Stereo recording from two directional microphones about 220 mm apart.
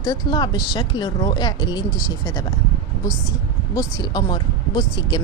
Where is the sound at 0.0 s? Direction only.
20° left (ahead or behind).